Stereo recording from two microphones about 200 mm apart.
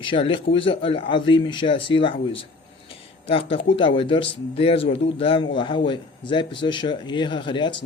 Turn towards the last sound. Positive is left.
turn(degrees=25)  # may be behind; listen again after turning